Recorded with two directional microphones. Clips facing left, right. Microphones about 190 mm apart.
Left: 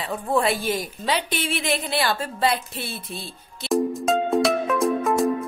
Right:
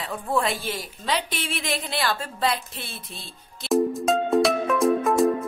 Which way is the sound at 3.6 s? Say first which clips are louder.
Even; centre (ahead or behind).